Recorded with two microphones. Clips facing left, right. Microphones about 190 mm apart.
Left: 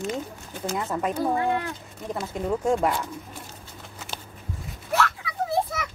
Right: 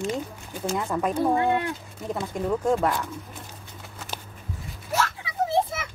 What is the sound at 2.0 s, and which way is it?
Speech, centre (ahead or behind).